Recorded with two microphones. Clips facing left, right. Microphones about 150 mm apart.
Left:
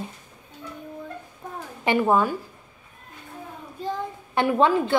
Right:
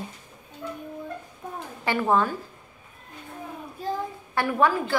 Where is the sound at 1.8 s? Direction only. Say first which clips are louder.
Left 3 dB; 15° left (ahead or behind).